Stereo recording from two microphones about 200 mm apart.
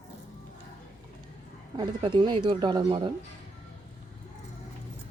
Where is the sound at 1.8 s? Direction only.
25° right (ahead or behind).